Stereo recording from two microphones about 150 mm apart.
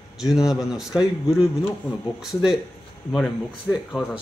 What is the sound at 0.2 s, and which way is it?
A man's voice, 5° right (ahead or behind).